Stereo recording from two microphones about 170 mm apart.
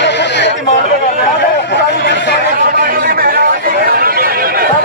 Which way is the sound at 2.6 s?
60° right (ahead or behind).